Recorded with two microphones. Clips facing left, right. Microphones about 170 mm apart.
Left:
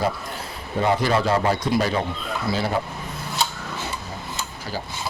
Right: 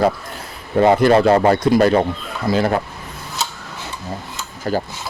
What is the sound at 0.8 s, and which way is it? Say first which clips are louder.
Speech: right 8 dB; 60° right (ahead or behind).